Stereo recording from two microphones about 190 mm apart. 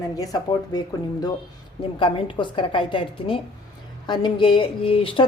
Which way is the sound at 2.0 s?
25° left (ahead or behind).